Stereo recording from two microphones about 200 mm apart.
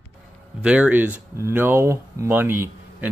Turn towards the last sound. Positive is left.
turn(degrees=-10)  # may be behind; listen again after turning